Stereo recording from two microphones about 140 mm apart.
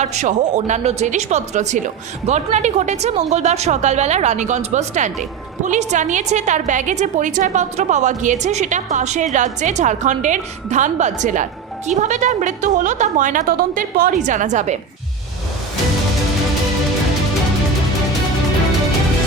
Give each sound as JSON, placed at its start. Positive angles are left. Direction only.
{"t": 0.0, "sound": "a woman's voice", "side_deg": -55}